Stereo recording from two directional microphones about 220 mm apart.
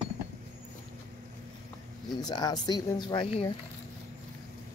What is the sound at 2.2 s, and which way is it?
A woman's voice, 20° left (ahead or behind).